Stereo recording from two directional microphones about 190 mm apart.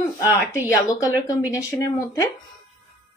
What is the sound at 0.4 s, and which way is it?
Speech, 15° left (ahead or behind).